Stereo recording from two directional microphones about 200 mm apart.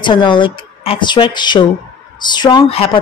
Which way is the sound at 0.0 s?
25° left (ahead or behind).